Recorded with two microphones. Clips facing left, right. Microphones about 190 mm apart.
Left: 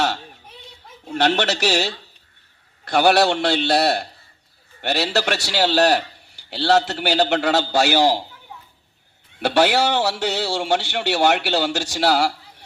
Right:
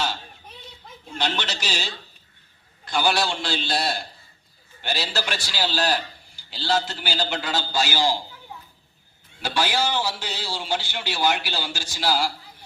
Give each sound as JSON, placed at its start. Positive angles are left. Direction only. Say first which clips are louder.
{"t": 1.0, "sound": "a man's voice", "louder": "left 9 dB", "side_deg": 65}
{"t": 9.4, "sound": "a man's voice", "louder": "left 7 dB", "side_deg": 70}